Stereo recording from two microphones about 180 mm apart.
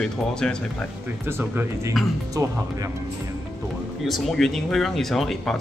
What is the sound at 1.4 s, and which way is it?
Speech, 10° right (ahead or behind).